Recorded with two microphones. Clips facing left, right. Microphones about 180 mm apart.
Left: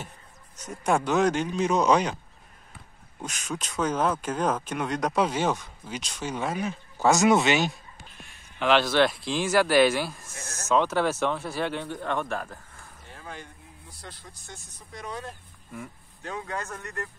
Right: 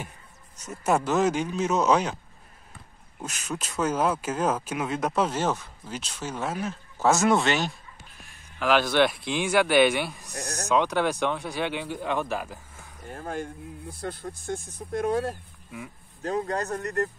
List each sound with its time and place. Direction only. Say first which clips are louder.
0.7 s speech: even; 5° right (ahead or behind)
3.2 s speech: even; 5° right (ahead or behind)
10.3 s snake: right 7 dB; 65° right (ahead or behind)
10.7 s speech: even; centre (ahead or behind)
13.0 s speech: right 9 dB; 50° right (ahead or behind)
16.2 s speech: right 7 dB; 40° right (ahead or behind)